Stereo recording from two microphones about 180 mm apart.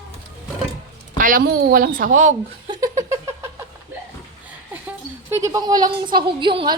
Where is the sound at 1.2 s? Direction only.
50° right (ahead or behind).